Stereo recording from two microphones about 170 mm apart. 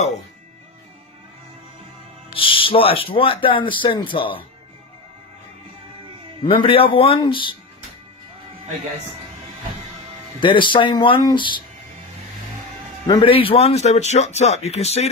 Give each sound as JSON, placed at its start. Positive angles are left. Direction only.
{"t": 2.3, "sound": "speech", "side_deg": 30}
{"t": 6.4, "sound": "speech", "side_deg": 30}
{"t": 10.4, "sound": "speech", "side_deg": 30}
{"t": 13.0, "sound": "speech", "side_deg": 30}